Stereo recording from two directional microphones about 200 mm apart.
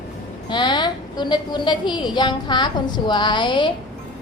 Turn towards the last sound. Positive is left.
turn(degrees=25)  # may be behind; listen again after turning